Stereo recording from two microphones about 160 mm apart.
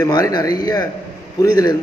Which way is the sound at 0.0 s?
20° left (ahead or behind).